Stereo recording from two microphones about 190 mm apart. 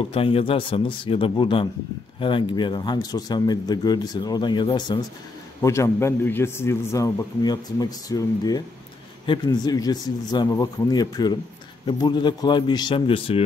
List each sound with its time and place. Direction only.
0.1 s a man's voice: 30° left (ahead or behind)